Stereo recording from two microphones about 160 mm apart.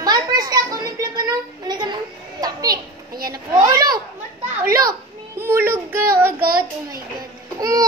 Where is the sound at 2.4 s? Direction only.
25° right (ahead or behind).